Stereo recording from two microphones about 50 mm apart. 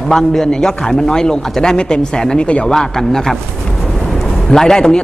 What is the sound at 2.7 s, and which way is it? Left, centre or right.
Speech, centre.